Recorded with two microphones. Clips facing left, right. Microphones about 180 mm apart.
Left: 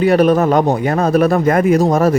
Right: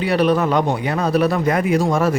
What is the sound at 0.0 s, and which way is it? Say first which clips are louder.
Speech: left 5 dB; 45° left (ahead or behind).